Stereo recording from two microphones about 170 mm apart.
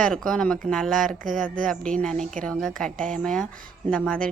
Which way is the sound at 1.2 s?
50° right (ahead or behind).